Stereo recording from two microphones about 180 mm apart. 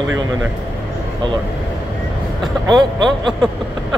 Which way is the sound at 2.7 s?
25° right (ahead or behind).